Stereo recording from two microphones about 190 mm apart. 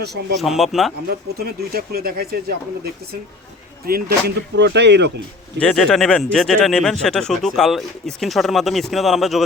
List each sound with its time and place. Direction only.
0.3 s speech: centre (ahead or behind)
1.4 s speech: 55° right (ahead or behind)
3.8 s speech: 55° right (ahead or behind)
5.5 s speech: 5° left (ahead or behind)